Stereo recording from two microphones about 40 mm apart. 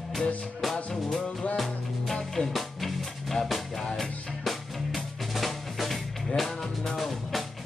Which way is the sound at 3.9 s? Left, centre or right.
Centre.